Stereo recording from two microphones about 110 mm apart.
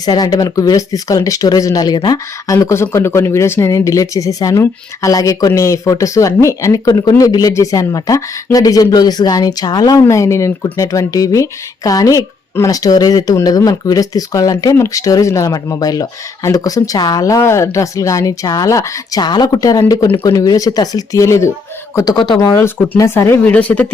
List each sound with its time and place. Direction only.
0.0 s speech: 35° left (ahead or behind)
2.6 s speech: 25° left (ahead or behind)
23.4 s speech: 15° left (ahead or behind)